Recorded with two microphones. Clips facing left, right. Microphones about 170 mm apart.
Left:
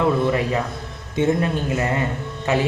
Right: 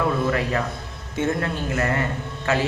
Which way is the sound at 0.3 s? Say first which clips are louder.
Left 2 dB; 20° left (ahead or behind).